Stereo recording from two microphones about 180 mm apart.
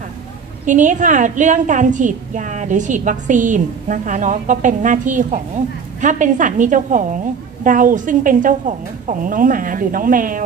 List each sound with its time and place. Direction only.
0.7 s a woman's voice: 45° right (ahead or behind)